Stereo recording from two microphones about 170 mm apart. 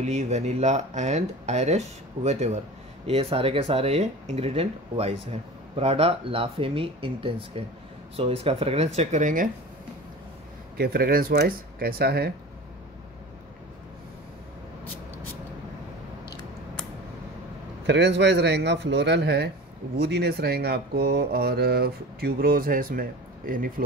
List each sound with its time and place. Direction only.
0.0 s speech: 40° right (ahead or behind)
10.8 s speech: 65° right (ahead or behind)
17.8 s speech: 90° right; by 23.7 s 55° right (ahead or behind)